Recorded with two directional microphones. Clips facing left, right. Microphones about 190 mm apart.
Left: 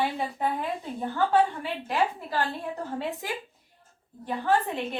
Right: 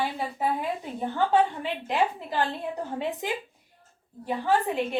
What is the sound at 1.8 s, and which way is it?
A woman's voice, 20° right (ahead or behind).